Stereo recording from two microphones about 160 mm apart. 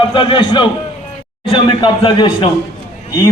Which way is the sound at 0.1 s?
30° left (ahead or behind).